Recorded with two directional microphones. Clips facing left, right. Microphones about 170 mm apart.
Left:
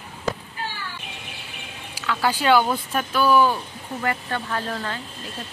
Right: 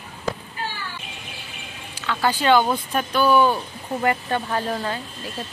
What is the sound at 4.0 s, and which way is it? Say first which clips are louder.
Speech: right 4 dB; 20° right (ahead or behind).